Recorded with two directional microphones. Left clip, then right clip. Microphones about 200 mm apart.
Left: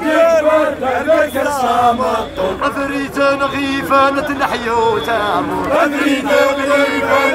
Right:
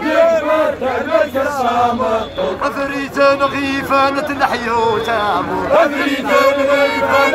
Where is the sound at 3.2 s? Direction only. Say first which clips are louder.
Right 2 dB; centre (ahead or behind).